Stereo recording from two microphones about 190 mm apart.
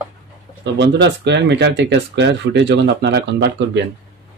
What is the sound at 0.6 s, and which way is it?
Speech, 65° right (ahead or behind).